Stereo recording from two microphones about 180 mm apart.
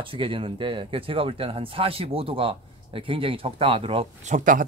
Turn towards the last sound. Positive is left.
turn(degrees=-45)  # may be behind; listen again after turning